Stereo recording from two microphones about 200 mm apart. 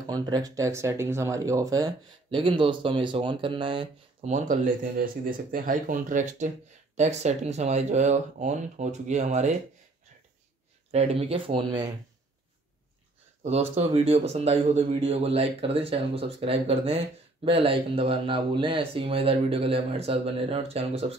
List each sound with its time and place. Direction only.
0.0 s speech: 20° right (ahead or behind)
4.3 s speech: 40° right (ahead or behind)
10.9 s speech: 30° right (ahead or behind)
13.4 s speech: 30° right (ahead or behind)